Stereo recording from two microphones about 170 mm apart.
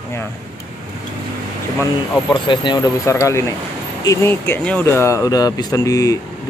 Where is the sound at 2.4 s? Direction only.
25° left (ahead or behind).